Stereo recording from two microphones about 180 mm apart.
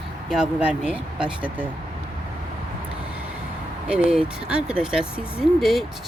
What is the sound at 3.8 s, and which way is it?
Speech, 5° right (ahead or behind).